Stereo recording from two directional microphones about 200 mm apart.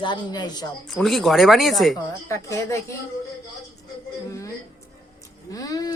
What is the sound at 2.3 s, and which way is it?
Speech, 15° left (ahead or behind).